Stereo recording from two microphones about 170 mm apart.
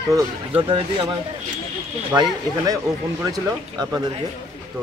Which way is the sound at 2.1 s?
25° right (ahead or behind).